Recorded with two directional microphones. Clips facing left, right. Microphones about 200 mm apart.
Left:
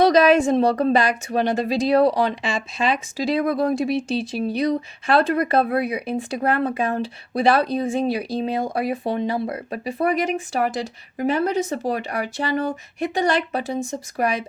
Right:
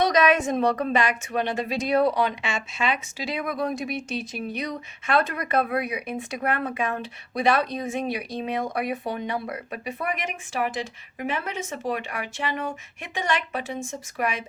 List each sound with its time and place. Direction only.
0.0 s a woman's voice: 30° left (ahead or behind)